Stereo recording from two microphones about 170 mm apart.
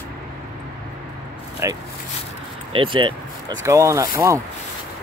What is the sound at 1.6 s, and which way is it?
Speech, 15° right (ahead or behind).